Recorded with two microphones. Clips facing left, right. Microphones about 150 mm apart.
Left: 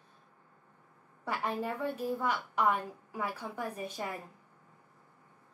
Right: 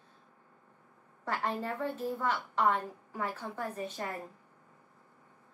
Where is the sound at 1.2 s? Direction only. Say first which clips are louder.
Even; 10° left (ahead or behind).